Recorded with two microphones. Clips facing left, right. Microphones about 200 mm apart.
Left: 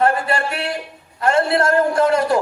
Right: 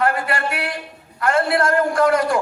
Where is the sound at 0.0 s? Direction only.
25° left (ahead or behind).